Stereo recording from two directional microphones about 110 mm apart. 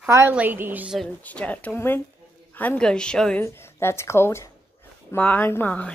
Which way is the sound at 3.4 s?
25° left (ahead or behind).